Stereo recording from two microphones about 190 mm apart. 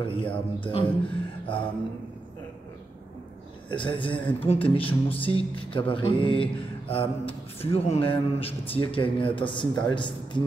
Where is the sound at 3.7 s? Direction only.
25° left (ahead or behind).